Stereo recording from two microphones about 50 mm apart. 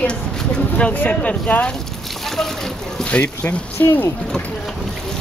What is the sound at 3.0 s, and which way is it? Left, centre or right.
Speech, left.